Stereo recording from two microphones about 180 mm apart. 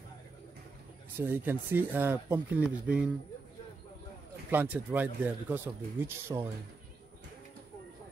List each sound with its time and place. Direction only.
1.2 s speech: 10° right (ahead or behind)
4.5 s speech: 10° right (ahead or behind)